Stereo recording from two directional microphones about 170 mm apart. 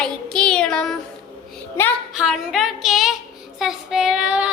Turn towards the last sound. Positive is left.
turn(degrees=-5)  # may be behind; listen again after turning